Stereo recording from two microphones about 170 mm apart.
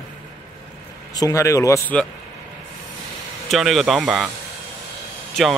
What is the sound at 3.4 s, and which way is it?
Speech, centre (ahead or behind).